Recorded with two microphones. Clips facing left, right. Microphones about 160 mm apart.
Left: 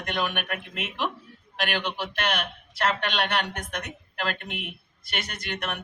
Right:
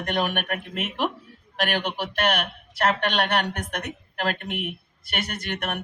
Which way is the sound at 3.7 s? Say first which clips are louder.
Right 3 dB; 45° right (ahead or behind).